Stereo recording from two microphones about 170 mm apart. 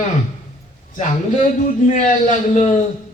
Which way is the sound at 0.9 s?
45° left (ahead or behind).